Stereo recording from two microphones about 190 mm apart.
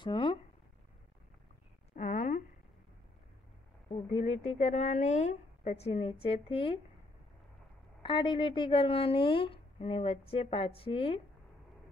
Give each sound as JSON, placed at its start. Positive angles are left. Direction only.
{"t": 0.0, "sound": "speech", "side_deg": 25}
{"t": 2.0, "sound": "a sound", "side_deg": 40}
{"t": 3.9, "sound": "a woman's voice", "side_deg": 35}
{"t": 8.0, "sound": "a woman's voice", "side_deg": 25}